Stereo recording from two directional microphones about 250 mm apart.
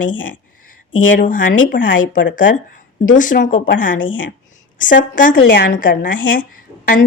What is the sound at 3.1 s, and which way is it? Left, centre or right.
A woman's voice, left.